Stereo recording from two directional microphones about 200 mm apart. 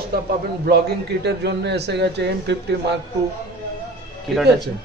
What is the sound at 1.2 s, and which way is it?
A man's voice, 55° right (ahead or behind).